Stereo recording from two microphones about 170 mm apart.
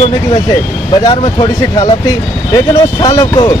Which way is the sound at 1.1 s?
30° left (ahead or behind).